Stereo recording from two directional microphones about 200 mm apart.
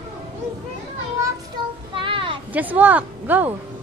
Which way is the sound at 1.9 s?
25° right (ahead or behind).